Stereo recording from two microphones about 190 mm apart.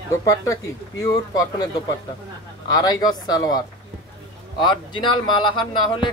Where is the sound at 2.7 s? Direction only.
20° left (ahead or behind).